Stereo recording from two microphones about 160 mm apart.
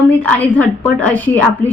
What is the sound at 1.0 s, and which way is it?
Speech, 10° left (ahead or behind).